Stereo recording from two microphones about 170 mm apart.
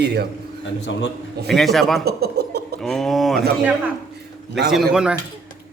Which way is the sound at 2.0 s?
70° right (ahead or behind).